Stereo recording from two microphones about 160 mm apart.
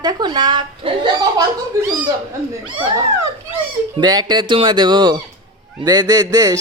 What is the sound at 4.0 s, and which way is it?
Speech, 25° right (ahead or behind).